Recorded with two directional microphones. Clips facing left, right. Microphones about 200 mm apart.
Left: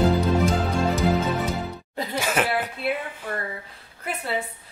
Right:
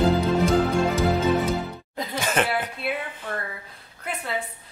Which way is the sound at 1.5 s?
Centre (ahead or behind).